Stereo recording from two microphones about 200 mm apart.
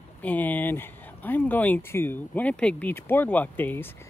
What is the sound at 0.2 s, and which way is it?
Speech, 10° left (ahead or behind).